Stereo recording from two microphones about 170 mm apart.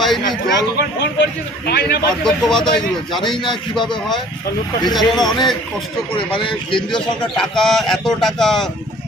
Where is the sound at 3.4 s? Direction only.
25° left (ahead or behind).